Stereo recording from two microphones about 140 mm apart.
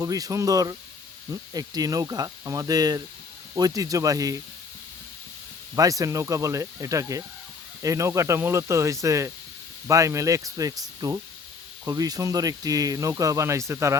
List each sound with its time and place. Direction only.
0.0 s speech: 25° right (ahead or behind)
5.7 s speech: 25° right (ahead or behind)